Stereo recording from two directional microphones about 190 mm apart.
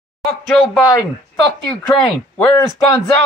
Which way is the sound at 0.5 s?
Centre (ahead or behind).